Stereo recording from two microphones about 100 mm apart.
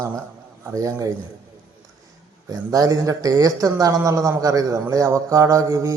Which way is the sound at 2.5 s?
35° right (ahead or behind).